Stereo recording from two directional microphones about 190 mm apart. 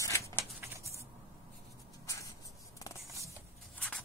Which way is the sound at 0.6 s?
15° right (ahead or behind).